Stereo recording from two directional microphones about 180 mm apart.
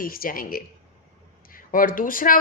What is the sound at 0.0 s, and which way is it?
Speech, 55° left (ahead or behind).